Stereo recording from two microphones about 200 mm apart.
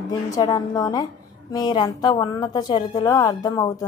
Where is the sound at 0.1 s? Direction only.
15° left (ahead or behind).